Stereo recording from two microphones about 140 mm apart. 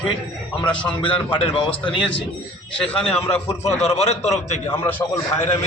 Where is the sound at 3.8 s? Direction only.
50° left (ahead or behind).